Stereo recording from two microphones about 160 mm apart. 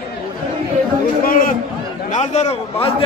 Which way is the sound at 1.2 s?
65° left (ahead or behind).